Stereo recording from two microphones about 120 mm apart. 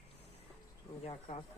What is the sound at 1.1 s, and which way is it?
Speech, 50° left (ahead or behind).